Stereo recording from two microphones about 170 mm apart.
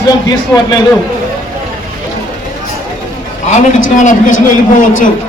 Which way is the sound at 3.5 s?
45° left (ahead or behind).